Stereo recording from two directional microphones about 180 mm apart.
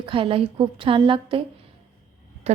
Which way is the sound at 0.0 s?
30° right (ahead or behind).